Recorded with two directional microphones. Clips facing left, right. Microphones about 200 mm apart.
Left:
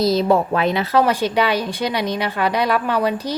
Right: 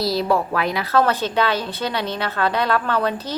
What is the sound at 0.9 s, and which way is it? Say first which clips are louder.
A woman's voice: left 1 dB; 10° left (ahead or behind).